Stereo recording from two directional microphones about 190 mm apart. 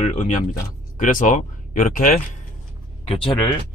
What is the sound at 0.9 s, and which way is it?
Speech, 45° left (ahead or behind).